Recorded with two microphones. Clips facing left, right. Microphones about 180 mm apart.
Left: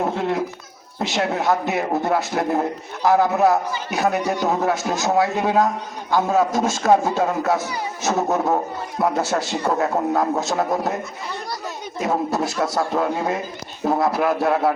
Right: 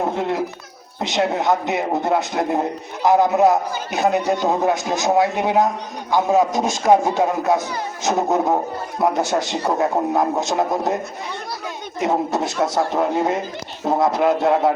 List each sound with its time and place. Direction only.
1.0 s a man's voice: 20° right (ahead or behind)
11.9 s a man's voice: 20° right (ahead or behind)